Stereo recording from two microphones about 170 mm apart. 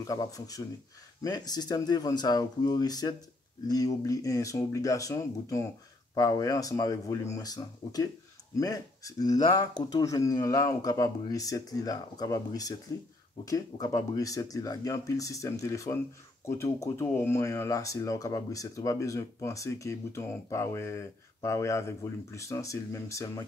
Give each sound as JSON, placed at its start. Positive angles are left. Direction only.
{"t": 0.0, "sound": "speech", "side_deg": 20}